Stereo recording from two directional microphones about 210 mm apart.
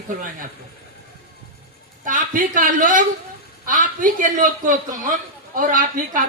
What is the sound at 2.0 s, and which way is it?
A woman's voice, 40° right (ahead or behind).